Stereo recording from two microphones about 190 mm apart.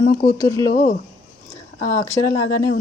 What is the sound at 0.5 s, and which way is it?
Speech, 20° left (ahead or behind).